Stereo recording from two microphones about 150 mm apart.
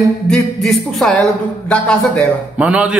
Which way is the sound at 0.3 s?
Centre (ahead or behind).